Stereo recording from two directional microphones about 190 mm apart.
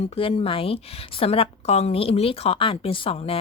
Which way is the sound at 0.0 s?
30° left (ahead or behind).